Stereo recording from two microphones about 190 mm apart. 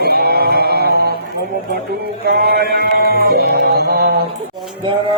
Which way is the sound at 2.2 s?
55° right (ahead or behind).